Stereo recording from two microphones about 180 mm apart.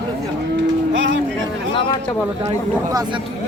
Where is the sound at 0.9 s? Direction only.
90° right.